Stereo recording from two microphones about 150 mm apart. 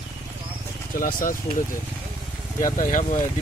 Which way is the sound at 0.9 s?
65° left (ahead or behind).